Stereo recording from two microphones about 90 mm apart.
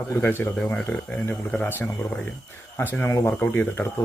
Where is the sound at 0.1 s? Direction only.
25° left (ahead or behind).